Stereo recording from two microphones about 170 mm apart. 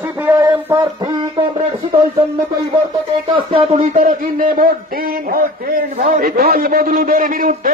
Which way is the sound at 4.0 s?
55° right (ahead or behind).